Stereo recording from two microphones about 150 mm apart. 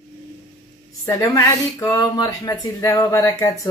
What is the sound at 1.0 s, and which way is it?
Speech, 20° left (ahead or behind).